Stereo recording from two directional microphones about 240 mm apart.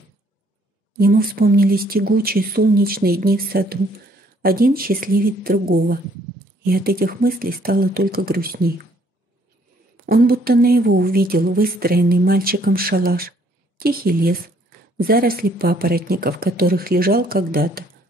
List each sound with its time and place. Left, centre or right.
0.9 s speech: right
10.0 s speech: right